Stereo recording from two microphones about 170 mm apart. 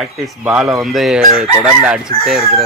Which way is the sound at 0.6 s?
Centre (ahead or behind).